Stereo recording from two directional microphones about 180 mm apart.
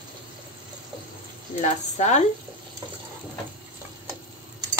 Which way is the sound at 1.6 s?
40° left (ahead or behind).